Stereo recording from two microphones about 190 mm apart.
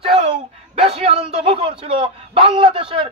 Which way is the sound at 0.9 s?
30° right (ahead or behind).